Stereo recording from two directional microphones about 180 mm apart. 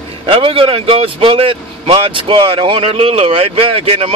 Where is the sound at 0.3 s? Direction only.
30° right (ahead or behind).